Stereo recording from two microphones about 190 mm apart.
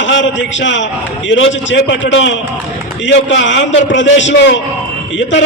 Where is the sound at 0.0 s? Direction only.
75° left (ahead or behind).